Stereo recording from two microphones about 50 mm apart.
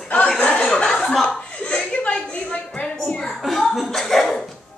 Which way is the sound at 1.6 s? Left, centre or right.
Left.